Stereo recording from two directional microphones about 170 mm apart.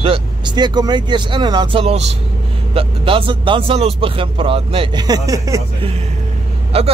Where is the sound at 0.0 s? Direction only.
30° right (ahead or behind).